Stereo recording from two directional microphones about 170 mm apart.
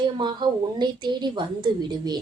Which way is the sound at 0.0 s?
25° right (ahead or behind).